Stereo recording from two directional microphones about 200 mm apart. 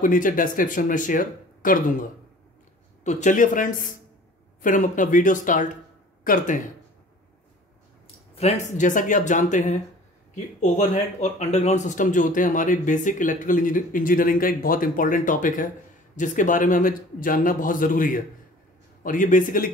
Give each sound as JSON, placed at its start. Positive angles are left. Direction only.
{"t": 0.0, "sound": "speech", "side_deg": 40}
{"t": 8.4, "sound": "speech", "side_deg": 35}